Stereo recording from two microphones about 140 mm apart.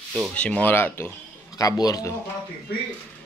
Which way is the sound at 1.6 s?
25° left (ahead or behind).